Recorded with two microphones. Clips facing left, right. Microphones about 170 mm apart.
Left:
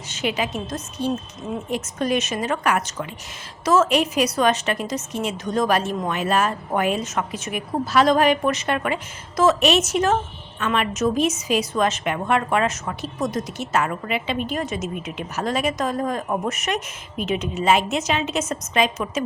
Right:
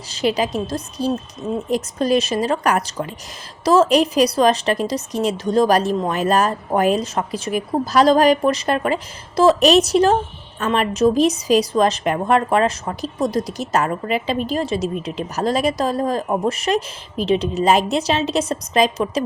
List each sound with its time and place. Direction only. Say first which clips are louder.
0.1 s a woman's voice: right 5 dB; 35° right (ahead or behind)